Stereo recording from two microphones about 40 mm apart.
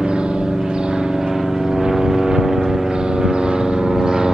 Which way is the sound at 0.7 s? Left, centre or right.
Right.